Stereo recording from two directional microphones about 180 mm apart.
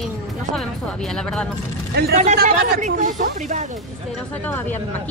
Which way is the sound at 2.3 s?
50° right (ahead or behind).